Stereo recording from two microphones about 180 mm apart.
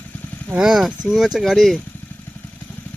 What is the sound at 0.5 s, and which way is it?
Speech, centre (ahead or behind).